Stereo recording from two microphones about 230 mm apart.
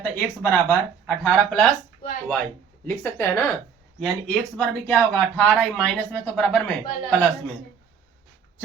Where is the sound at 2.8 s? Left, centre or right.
Centre.